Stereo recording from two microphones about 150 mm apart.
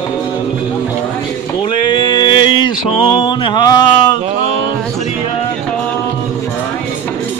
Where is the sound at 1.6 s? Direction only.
35° left (ahead or behind).